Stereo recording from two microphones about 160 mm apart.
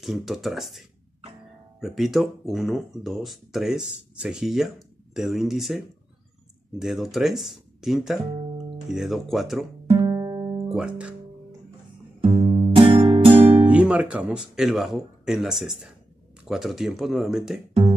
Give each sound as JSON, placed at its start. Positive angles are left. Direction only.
{"t": 0.0, "sound": "speech", "side_deg": 0}
{"t": 9.9, "sound": "music", "side_deg": -20}
{"t": 10.7, "sound": "speech", "side_deg": -5}
{"t": 12.2, "sound": "music", "side_deg": -40}
{"t": 13.7, "sound": "speech", "side_deg": -5}